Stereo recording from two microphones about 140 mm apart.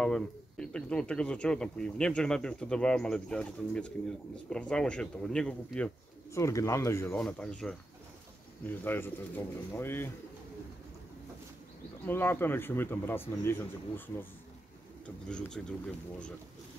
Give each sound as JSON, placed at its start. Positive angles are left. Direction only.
{"t": 0.0, "sound": "speech", "side_deg": 5}
{"t": 6.3, "sound": "speech", "side_deg": 20}
{"t": 7.2, "sound": "speech", "side_deg": 5}
{"t": 12.1, "sound": "speech", "side_deg": 15}